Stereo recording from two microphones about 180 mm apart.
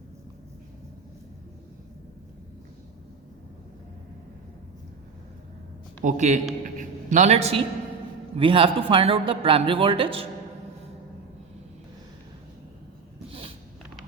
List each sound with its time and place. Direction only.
6.0 s a man's voice: 45° right (ahead or behind)